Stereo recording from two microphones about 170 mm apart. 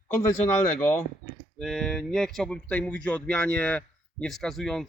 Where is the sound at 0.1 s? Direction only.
10° left (ahead or behind).